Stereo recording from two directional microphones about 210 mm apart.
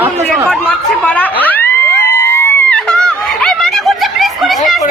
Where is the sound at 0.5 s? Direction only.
5° left (ahead or behind).